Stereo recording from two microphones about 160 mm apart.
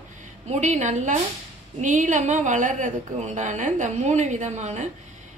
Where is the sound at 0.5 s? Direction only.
45° right (ahead or behind).